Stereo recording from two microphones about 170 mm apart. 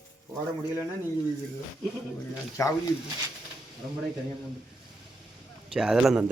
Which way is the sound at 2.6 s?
20° left (ahead or behind).